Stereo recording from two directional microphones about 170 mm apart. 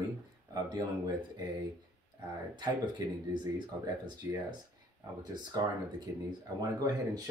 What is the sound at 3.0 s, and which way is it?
Speech, 20° right (ahead or behind).